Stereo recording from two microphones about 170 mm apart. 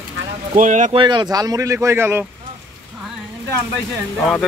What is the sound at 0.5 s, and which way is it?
Speech, 50° right (ahead or behind).